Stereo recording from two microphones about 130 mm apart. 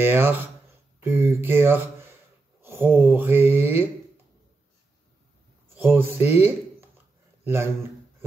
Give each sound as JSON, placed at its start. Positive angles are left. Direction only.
{"t": 0.0, "sound": "speech", "side_deg": -15}
{"t": 5.8, "sound": "speech", "side_deg": -15}
{"t": 7.4, "sound": "speech", "side_deg": -20}